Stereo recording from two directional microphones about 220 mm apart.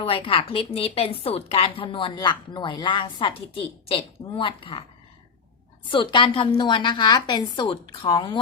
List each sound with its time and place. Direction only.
0.0 s a woman's voice: 25° left (ahead or behind)
5.9 s a woman's voice: 20° left (ahead or behind)